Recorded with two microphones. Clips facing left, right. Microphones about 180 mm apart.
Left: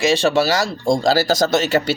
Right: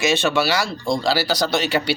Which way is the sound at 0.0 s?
35° left (ahead or behind).